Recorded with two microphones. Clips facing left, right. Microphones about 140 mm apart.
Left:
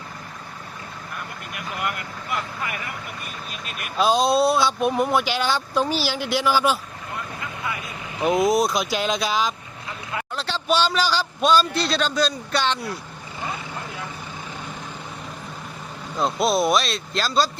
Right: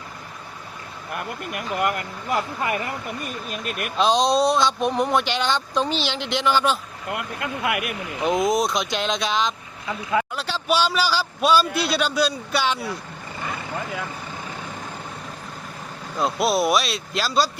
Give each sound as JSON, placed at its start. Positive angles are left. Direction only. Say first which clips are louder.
{"t": 1.5, "sound": "speech", "louder": "right 5 dB", "side_deg": -45}
{"t": 3.5, "sound": "speech", "louder": "right 6 dB", "side_deg": -50}
{"t": 3.9, "sound": "speech", "louder": "even", "side_deg": 5}
{"t": 7.1, "sound": "speech", "louder": "right 5 dB", "side_deg": -75}
{"t": 8.2, "sound": "speech", "louder": "left 2 dB", "side_deg": 0}
{"t": 10.3, "sound": "a man's voice", "louder": "even", "side_deg": -10}
{"t": 16.1, "sound": "a man's voice", "louder": "even", "side_deg": -5}